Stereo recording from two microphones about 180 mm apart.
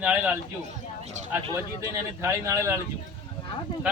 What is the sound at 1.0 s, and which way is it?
Speech, 40° right (ahead or behind).